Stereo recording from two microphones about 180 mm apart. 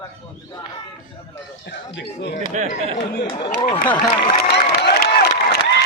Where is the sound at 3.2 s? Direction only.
25° left (ahead or behind).